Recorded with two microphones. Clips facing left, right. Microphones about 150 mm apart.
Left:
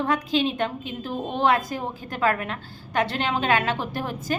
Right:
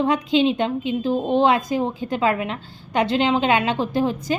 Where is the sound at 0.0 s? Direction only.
20° right (ahead or behind).